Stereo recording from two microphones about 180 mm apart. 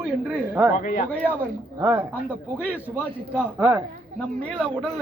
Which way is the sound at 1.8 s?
20° right (ahead or behind).